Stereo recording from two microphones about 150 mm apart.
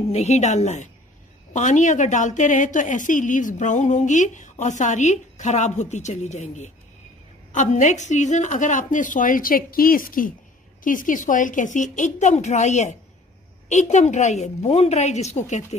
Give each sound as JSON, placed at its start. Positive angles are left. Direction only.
{"t": 0.1, "sound": "a woman's voice", "side_deg": 45}